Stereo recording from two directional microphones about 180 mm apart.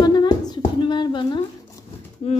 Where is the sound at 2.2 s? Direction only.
35° left (ahead or behind).